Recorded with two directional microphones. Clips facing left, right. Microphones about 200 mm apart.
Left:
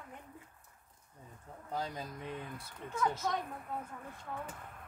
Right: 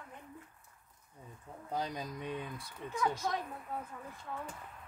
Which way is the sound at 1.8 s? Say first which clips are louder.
Right 2 dB; 15° right (ahead or behind).